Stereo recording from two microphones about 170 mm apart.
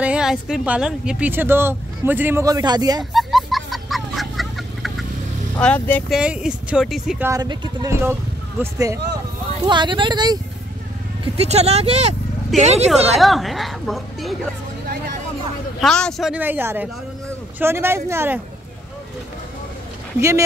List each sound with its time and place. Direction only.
0.0 s speech: 5° right (ahead or behind); by 3.0 s 25° right (ahead or behind)
3.0 s chicken: centre (ahead or behind)
5.6 s speech: 10° left (ahead or behind)
6.0 s speech: 5° right (ahead or behind)
7.2 s speech: 25° right (ahead or behind)
11.3 s speech: 40° right (ahead or behind)
13.2 s a woman's voice: centre (ahead or behind)
15.8 s speech: 5° left (ahead or behind); by 18.4 s 15° right (ahead or behind)
20.2 s speech: 15° right (ahead or behind)